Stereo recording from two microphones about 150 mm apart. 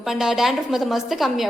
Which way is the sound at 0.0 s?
5° right (ahead or behind).